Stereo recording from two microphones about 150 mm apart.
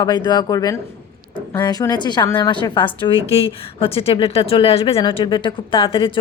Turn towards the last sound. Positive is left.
turn(degrees=35)  # may be behind; listen again after turning